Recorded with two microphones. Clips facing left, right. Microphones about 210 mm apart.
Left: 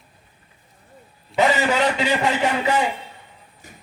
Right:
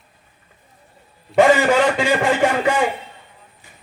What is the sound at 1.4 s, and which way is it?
A man's voice, 50° right (ahead or behind).